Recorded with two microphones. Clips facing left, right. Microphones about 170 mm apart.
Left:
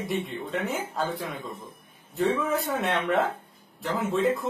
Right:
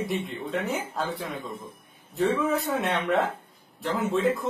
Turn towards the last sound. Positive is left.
turn(degrees=0)  # may be behind; listen again after turning